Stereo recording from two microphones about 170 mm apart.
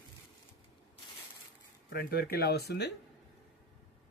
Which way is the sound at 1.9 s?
65° left (ahead or behind).